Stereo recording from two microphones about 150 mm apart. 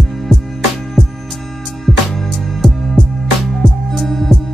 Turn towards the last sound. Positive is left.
turn(degrees=0)  # may be behind; listen again after turning